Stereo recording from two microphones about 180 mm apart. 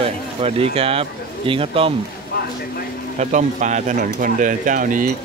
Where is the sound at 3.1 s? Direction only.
40° right (ahead or behind).